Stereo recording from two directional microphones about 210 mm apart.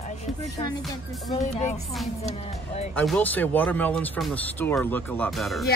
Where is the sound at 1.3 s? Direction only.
30° left (ahead or behind).